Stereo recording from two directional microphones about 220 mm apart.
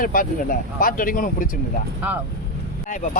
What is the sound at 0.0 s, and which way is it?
Speech, 40° left (ahead or behind).